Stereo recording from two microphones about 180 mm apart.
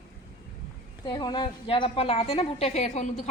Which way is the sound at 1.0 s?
25° left (ahead or behind).